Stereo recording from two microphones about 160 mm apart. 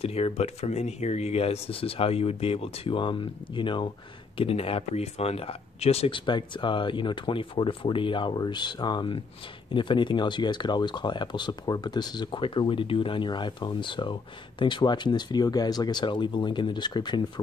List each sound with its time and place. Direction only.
0.0 s speech: 40° left (ahead or behind)